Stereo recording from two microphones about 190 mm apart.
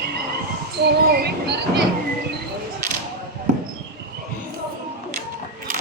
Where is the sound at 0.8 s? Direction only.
60° right (ahead or behind).